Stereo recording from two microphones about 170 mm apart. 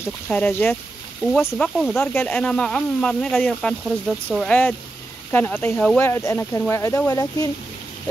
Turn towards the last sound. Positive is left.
turn(degrees=20)  # may be behind; listen again after turning